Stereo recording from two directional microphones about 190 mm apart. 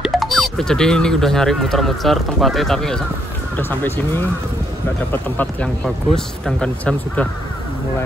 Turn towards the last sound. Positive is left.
turn(degrees=5)  # may be behind; listen again after turning